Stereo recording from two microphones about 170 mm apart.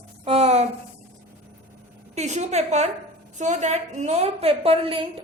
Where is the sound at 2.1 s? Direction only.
40° right (ahead or behind).